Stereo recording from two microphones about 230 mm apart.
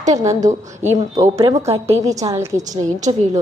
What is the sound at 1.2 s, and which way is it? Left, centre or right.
A woman's voice, centre.